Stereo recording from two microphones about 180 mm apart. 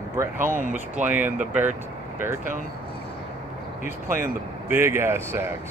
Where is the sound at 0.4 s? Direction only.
45° right (ahead or behind).